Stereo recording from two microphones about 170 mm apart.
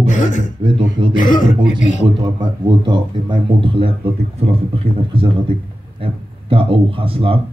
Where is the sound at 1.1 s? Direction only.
50° left (ahead or behind).